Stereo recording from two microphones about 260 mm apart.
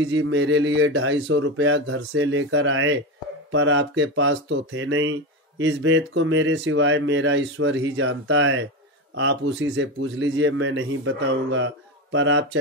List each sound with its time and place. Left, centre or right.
0.0 s speech: right